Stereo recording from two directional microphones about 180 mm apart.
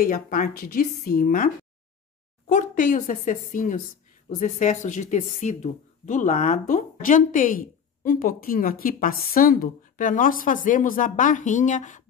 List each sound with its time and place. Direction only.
0.0 s speech: 50° left (ahead or behind)